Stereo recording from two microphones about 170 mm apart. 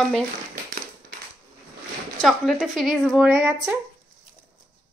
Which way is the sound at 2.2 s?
Centre (ahead or behind).